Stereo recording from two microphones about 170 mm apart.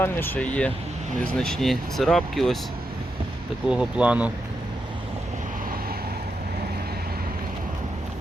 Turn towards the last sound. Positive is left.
turn(degrees=-65)  # may be behind; listen again after turning